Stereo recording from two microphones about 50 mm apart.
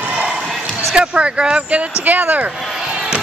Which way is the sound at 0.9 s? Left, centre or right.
Right.